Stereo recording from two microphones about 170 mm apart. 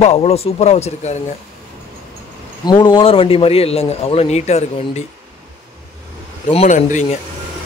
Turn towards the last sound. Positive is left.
turn(degrees=45)  # may be behind; listen again after turning